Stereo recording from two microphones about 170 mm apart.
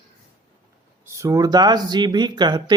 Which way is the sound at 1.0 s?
15° right (ahead or behind).